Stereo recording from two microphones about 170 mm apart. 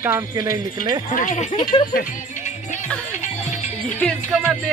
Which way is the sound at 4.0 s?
Centre (ahead or behind).